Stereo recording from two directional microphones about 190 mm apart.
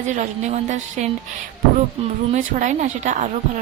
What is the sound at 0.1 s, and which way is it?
Speech, 40° right (ahead or behind).